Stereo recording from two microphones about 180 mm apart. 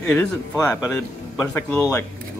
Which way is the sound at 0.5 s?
15° left (ahead or behind).